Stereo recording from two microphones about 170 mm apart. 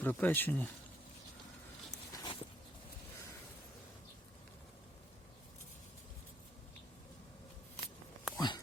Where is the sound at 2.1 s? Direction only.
25° left (ahead or behind).